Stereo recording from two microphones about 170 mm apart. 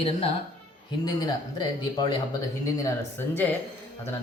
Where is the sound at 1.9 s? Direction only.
20° left (ahead or behind).